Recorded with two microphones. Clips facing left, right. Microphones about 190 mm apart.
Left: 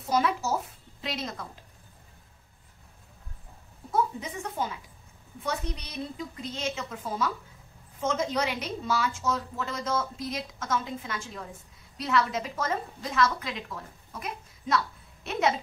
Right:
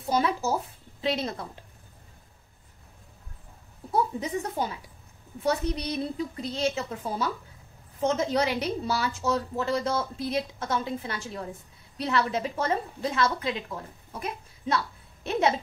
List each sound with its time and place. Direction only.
0.1 s speech: 30° right (ahead or behind)
1.0 s a sound: 30° right (ahead or behind)
3.9 s a woman's voice: 35° right (ahead or behind)